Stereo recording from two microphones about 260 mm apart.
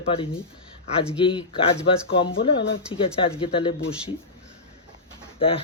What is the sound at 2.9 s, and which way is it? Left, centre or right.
Speech, centre.